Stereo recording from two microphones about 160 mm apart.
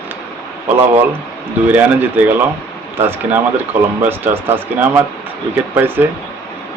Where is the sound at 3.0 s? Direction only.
15° right (ahead or behind).